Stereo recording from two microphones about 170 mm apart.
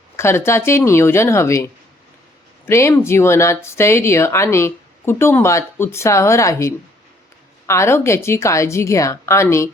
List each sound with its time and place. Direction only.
0.2 s speech: 15° left (ahead or behind)